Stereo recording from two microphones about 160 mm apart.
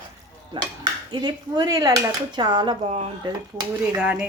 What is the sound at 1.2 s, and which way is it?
Speech, 25° right (ahead or behind).